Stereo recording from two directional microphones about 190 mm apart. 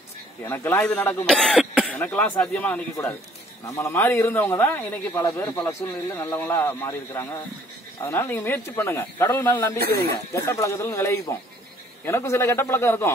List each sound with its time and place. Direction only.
0.5 s speech: 15° left (ahead or behind)
1.9 s a man's voice: 10° left (ahead or behind)